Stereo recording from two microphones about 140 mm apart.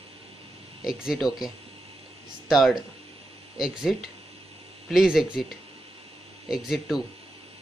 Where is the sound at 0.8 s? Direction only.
5° right (ahead or behind).